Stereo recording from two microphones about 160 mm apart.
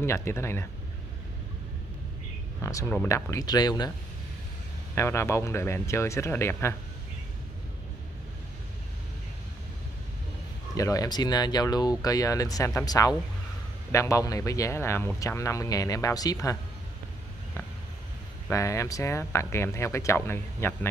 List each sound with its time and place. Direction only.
0.0 s speech: 15° left (ahead or behind)
2.6 s speech: 20° left (ahead or behind)
4.9 s speech: 15° left (ahead or behind)
10.7 s speech: 20° left (ahead or behind)
18.5 s speech: 20° left (ahead or behind)